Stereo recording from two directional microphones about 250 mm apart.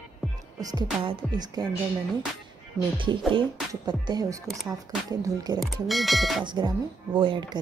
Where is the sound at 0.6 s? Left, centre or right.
Centre.